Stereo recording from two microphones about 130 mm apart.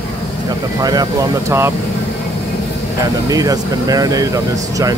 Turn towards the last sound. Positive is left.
turn(degrees=-25)  # may be behind; listen again after turning